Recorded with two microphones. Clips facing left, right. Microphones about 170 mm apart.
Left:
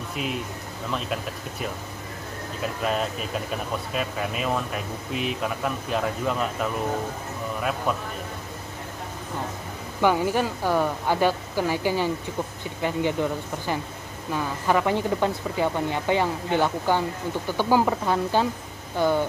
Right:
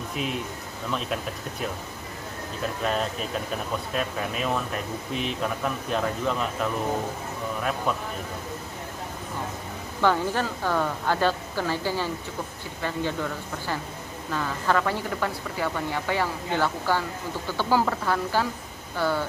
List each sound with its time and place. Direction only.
0.1 s speech: centre (ahead or behind)
10.0 s a woman's voice: 15° left (ahead or behind)